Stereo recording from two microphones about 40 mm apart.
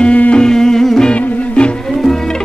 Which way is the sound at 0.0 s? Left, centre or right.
Left.